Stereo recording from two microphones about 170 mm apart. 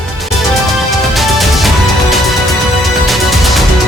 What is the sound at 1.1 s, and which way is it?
Music, centre (ahead or behind).